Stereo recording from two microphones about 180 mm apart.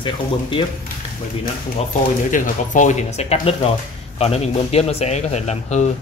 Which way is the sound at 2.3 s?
45° left (ahead or behind).